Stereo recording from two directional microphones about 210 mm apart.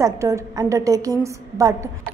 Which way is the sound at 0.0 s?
15° right (ahead or behind).